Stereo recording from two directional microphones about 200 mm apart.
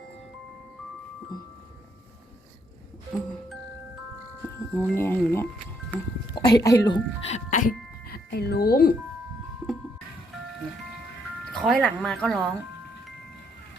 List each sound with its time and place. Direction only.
3.1 s speech: centre (ahead or behind)
4.4 s speech: 10° left (ahead or behind)
7.3 s speech: 35° left (ahead or behind)
11.5 s speech: centre (ahead or behind)